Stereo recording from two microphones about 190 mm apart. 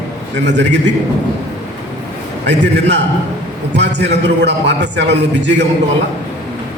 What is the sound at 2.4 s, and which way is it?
A man's voice, 65° right (ahead or behind).